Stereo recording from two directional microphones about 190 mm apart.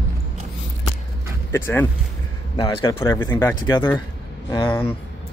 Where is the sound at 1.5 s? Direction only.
10° left (ahead or behind).